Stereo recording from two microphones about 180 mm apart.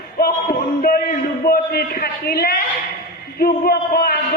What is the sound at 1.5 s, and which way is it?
A man's voice, 55° left (ahead or behind).